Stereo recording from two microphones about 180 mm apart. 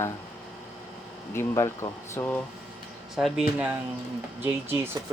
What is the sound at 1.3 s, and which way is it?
Speech, 15° left (ahead or behind).